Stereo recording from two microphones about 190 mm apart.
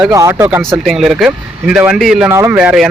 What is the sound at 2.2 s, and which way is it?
Speech, 15° right (ahead or behind).